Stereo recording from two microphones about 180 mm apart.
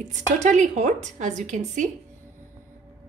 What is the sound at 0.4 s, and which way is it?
A woman's voice, 40° right (ahead or behind).